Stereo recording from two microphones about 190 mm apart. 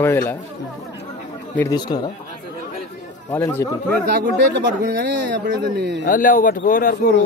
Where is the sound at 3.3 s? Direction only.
15° left (ahead or behind).